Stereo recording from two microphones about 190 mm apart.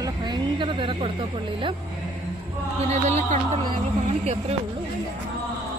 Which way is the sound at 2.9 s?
35° right (ahead or behind).